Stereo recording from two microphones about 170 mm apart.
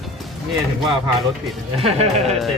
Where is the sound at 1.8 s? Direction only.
35° right (ahead or behind).